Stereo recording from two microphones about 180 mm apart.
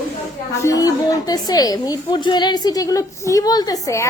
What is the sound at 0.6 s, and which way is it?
A woman's voice, 20° left (ahead or behind).